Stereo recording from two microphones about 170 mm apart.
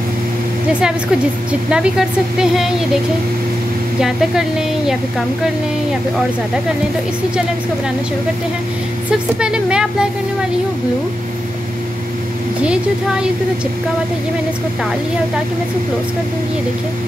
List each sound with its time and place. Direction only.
1.5 s speech: 5° right (ahead or behind)
4.0 s speech: 5° right (ahead or behind)
9.4 s speech: 5° right (ahead or behind)
12.6 s speech: 5° right (ahead or behind)